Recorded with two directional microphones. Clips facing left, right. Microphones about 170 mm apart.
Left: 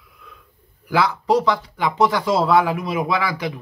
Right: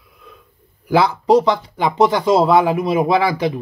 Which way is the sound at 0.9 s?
25° right (ahead or behind).